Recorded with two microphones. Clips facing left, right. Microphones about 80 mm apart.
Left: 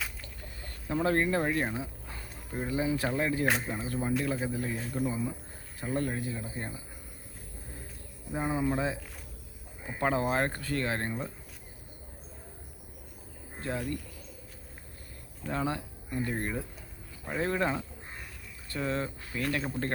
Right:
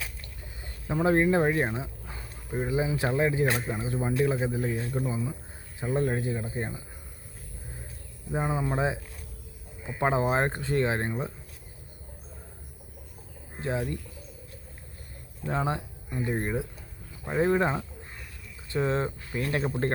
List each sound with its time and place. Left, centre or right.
0.6 s speech: centre
6.1 s speech: right
8.3 s speech: right
10.0 s speech: right
13.6 s speech: centre
15.4 s speech: right